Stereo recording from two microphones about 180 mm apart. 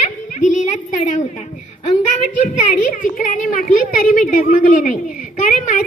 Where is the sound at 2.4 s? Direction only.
45° left (ahead or behind).